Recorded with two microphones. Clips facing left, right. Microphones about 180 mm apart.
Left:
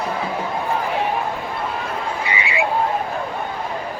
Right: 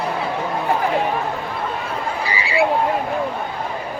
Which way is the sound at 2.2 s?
35° right (ahead or behind).